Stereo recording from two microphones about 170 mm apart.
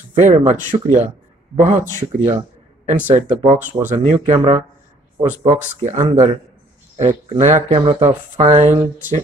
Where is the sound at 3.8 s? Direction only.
45° right (ahead or behind).